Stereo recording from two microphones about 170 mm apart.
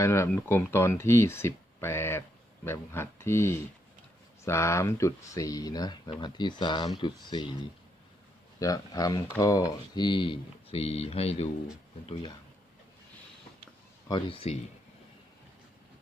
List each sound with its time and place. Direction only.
0.0 s speech: 15° left (ahead or behind)
8.5 s speech: 20° left (ahead or behind)
14.1 s speech: 30° left (ahead or behind)